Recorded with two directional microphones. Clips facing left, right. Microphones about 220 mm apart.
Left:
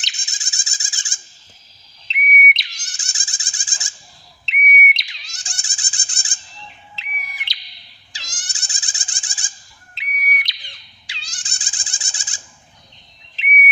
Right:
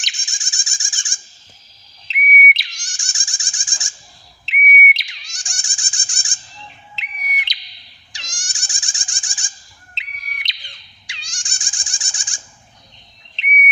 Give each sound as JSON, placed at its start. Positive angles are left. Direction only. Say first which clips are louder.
{"t": 0.1, "sound": "bird", "louder": "right 1 dB", "side_deg": 20}
{"t": 2.0, "sound": "whistle", "louder": "right 1 dB", "side_deg": 0}
{"t": 2.7, "sound": "frog", "louder": "right 1 dB", "side_deg": 20}
{"t": 4.4, "sound": "whistle", "louder": "right 1 dB", "side_deg": 0}
{"t": 5.2, "sound": "frog", "louder": "even", "side_deg": 20}
{"t": 6.9, "sound": "bird", "louder": "right 4 dB", "side_deg": -15}
{"t": 8.3, "sound": "a sound", "louder": "right 1 dB", "side_deg": 20}
{"t": 9.9, "sound": "bird", "louder": "left 9 dB", "side_deg": -25}
{"t": 11.3, "sound": "bird", "louder": "even", "side_deg": 20}